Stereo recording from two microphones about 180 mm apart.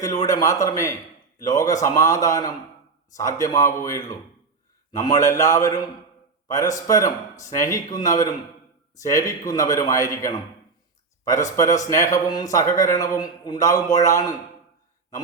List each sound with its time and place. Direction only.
0.3 s a man's voice: 20° left (ahead or behind)